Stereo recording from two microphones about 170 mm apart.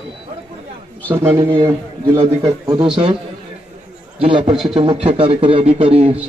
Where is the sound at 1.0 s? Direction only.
15° right (ahead or behind).